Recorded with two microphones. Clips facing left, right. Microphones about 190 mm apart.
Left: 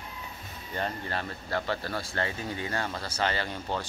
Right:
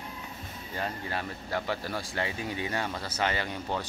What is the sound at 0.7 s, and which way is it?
Speech, 5° right (ahead or behind).